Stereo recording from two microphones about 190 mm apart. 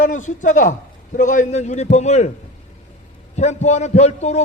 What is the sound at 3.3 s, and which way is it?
A man's voice, 35° left (ahead or behind).